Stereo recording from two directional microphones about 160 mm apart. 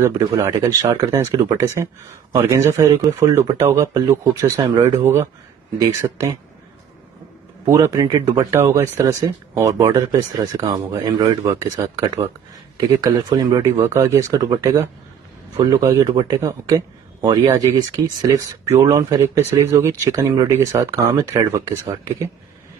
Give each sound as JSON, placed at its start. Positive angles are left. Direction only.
{"t": 0.0, "sound": "a man's voice", "side_deg": -15}
{"t": 7.6, "sound": "a man's voice", "side_deg": -20}